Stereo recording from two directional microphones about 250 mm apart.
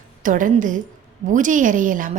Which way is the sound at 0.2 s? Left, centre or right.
Right.